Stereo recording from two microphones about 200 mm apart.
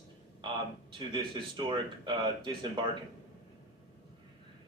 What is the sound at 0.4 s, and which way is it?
A man's voice, 25° right (ahead or behind).